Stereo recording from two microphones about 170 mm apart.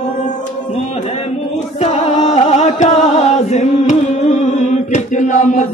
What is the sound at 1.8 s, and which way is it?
Music, 40° left (ahead or behind).